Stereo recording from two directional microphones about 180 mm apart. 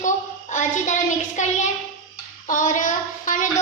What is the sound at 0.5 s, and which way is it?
Speech, 45° left (ahead or behind).